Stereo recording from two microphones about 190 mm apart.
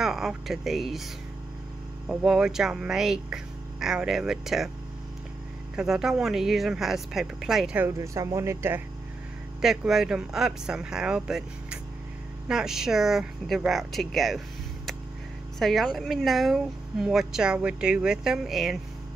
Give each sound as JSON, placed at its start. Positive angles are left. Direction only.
{"t": 0.0, "sound": "speech", "side_deg": 0}
{"t": 2.0, "sound": "speech", "side_deg": -5}
{"t": 5.8, "sound": "speech", "side_deg": -5}
{"t": 9.6, "sound": "speech", "side_deg": 0}
{"t": 15.6, "sound": "speech", "side_deg": 0}